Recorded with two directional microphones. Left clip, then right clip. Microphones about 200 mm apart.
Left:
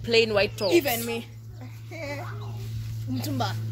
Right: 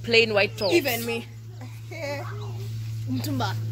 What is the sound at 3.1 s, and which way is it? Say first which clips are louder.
Speech: right 1 dB; 35° left (ahead or behind).